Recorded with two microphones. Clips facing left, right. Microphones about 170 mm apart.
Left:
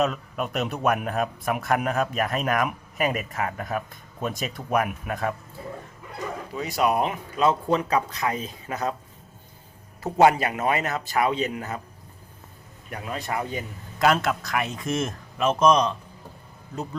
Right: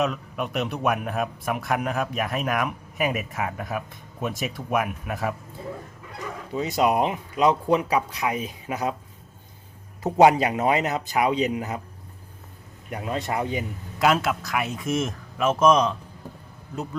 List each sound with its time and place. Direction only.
0.0 s speech: centre (ahead or behind)
6.5 s speech: 25° right (ahead or behind)
10.0 s speech: 15° right (ahead or behind)
12.9 s speech: 25° right (ahead or behind)
14.0 s speech: 5° right (ahead or behind)